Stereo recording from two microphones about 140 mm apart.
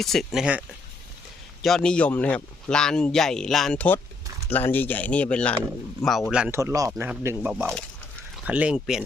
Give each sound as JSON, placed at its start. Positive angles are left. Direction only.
{"t": 0.0, "sound": "speech", "side_deg": 0}
{"t": 1.6, "sound": "speech", "side_deg": 5}
{"t": 6.5, "sound": "speech", "side_deg": -20}